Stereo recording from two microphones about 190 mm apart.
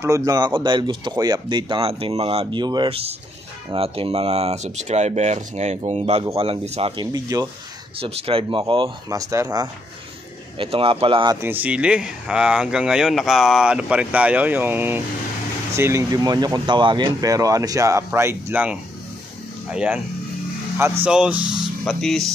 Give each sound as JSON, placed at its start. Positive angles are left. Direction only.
{"t": 0.0, "sound": "speech", "side_deg": -15}
{"t": 7.1, "sound": "speech", "side_deg": -20}
{"t": 8.0, "sound": "speech", "side_deg": -30}
{"t": 10.6, "sound": "speech", "side_deg": -30}
{"t": 11.4, "sound": "speech", "side_deg": -10}
{"t": 21.0, "sound": "speech", "side_deg": -5}